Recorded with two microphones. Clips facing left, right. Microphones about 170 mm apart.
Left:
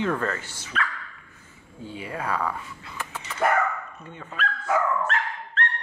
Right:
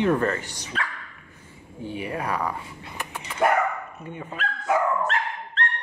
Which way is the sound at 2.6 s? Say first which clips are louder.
Right 1 dB; 25° right (ahead or behind).